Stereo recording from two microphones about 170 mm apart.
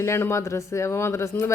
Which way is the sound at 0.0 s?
15° left (ahead or behind).